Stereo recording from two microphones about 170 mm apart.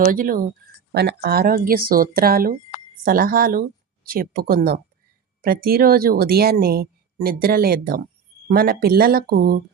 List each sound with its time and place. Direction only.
0.0 s a woman's voice: 55° right (ahead or behind)
0.9 s a woman's voice: 70° right (ahead or behind)